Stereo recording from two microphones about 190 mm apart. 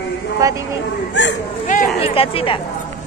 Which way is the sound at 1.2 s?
75° left (ahead or behind).